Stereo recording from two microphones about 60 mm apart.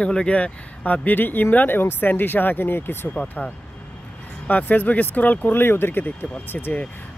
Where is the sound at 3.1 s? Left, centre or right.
Left.